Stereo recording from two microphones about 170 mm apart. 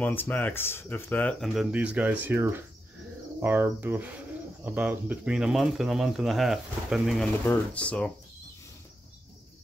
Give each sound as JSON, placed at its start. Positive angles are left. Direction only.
{"t": 0.0, "sound": "speech", "side_deg": 10}
{"t": 1.4, "sound": "speech", "side_deg": 0}